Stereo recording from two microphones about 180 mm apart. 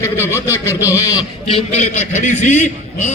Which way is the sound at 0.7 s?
10° right (ahead or behind).